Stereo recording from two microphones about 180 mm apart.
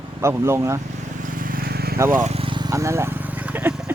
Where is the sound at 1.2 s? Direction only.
50° right (ahead or behind).